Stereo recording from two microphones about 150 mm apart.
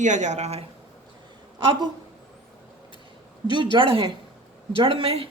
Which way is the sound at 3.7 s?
35° right (ahead or behind).